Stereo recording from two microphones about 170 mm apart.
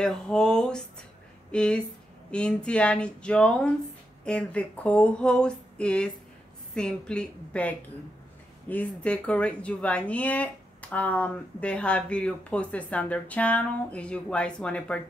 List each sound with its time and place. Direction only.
0.0 s a woman's voice: 5° left (ahead or behind)